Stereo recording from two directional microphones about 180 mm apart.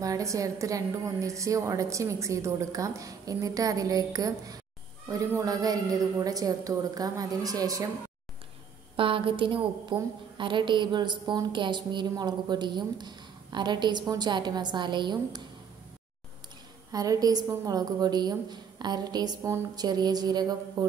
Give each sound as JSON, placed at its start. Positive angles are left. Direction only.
{"t": 0.0, "sound": "a woman's voice", "side_deg": -20}
{"t": 8.9, "sound": "a woman's voice", "side_deg": -30}
{"t": 16.9, "sound": "a woman's voice", "side_deg": -20}